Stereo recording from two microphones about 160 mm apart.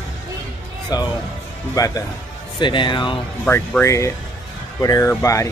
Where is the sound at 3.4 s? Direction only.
10° left (ahead or behind).